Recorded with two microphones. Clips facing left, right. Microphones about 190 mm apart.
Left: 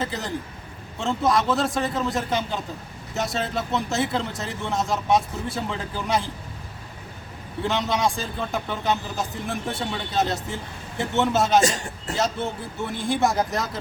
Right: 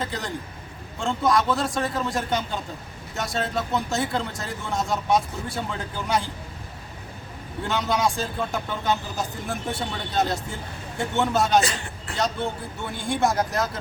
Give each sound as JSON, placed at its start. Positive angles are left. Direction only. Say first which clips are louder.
{"t": 0.0, "sound": "a man's voice", "louder": "left 2 dB", "side_deg": 5}
{"t": 7.7, "sound": "a man's voice", "louder": "even", "side_deg": 0}
{"t": 11.6, "sound": "speech", "louder": "left 5 dB", "side_deg": 45}
{"t": 12.1, "sound": "a man's voice", "louder": "left 1 dB", "side_deg": 0}